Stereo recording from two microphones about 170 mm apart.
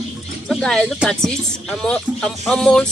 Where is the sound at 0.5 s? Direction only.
5° left (ahead or behind).